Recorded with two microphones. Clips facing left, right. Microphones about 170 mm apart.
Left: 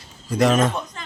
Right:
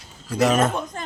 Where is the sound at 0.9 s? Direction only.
45° right (ahead or behind).